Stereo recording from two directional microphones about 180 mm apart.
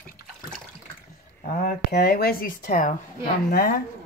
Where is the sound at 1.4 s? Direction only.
55° left (ahead or behind).